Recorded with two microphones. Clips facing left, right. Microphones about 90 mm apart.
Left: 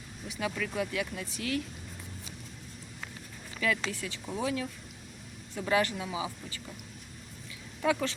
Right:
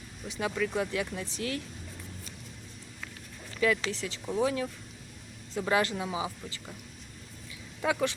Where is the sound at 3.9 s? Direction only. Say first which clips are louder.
Right 4 dB; 20° right (ahead or behind).